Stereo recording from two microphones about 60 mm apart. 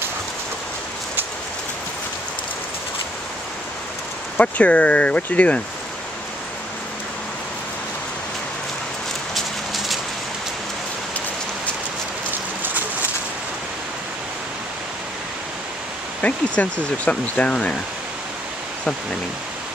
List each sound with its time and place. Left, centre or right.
4.4 s speech: left
16.2 s speech: left